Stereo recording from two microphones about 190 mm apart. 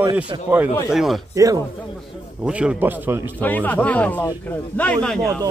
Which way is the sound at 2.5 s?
5° right (ahead or behind).